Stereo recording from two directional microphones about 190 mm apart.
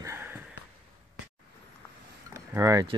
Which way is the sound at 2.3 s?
15° right (ahead or behind).